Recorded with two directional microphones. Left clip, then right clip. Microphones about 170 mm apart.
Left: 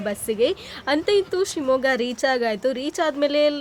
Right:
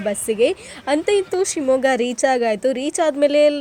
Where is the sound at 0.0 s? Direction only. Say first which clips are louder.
Right 4 dB; 15° right (ahead or behind).